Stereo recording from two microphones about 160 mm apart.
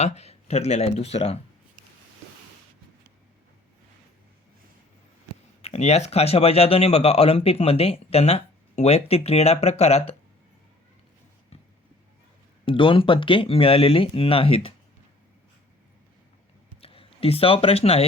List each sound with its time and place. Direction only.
0.0 s speech: 40° left (ahead or behind)
5.6 s speech: 40° left (ahead or behind)
12.6 s speech: 30° left (ahead or behind)
16.8 s speech: 35° left (ahead or behind)